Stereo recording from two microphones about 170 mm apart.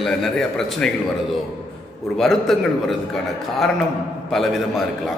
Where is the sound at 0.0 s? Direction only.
Centre (ahead or behind).